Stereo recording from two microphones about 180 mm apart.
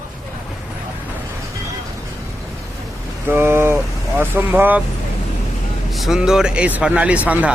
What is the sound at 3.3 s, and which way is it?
A man's voice, 10° right (ahead or behind).